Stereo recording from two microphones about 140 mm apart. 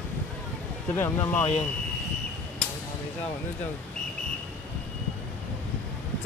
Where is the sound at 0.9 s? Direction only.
15° left (ahead or behind).